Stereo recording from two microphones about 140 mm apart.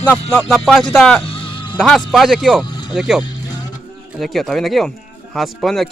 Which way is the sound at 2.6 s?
35° left (ahead or behind).